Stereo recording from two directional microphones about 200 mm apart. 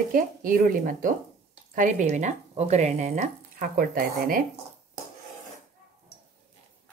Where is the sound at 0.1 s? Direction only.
45° right (ahead or behind).